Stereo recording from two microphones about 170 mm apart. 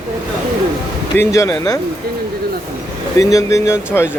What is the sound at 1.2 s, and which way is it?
Speech, 15° left (ahead or behind).